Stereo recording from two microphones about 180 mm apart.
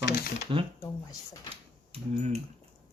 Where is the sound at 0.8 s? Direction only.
20° left (ahead or behind).